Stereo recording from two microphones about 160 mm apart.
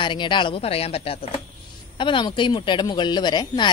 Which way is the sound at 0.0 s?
30° left (ahead or behind).